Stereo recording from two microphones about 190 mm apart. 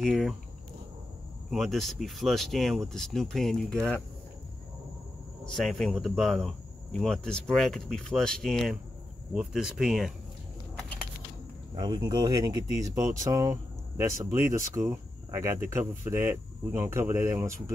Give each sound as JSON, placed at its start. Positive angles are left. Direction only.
{"t": 0.0, "sound": "speech", "side_deg": 0}
{"t": 1.5, "sound": "speech", "side_deg": 0}
{"t": 5.4, "sound": "speech", "side_deg": 0}
{"t": 11.8, "sound": "speech", "side_deg": -25}